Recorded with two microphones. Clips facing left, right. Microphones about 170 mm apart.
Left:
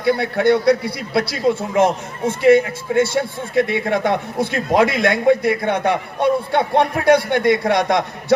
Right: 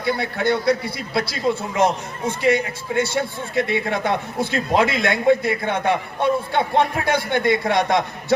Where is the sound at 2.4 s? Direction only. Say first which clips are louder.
Left 7 dB; 55° left (ahead or behind).